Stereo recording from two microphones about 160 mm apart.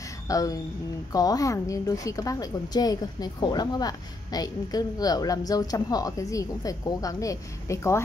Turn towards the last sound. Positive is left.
turn(degrees=20)  # may be behind; listen again after turning